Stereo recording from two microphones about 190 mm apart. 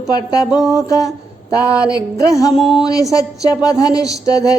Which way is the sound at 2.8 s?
20° left (ahead or behind).